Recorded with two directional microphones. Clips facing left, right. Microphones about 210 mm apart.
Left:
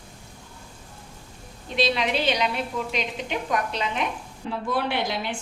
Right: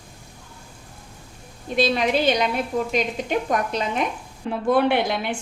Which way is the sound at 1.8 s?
45° right (ahead or behind).